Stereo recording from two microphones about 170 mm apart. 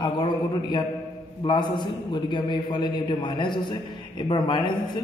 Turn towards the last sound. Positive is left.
turn(degrees=25)  # may be behind; listen again after turning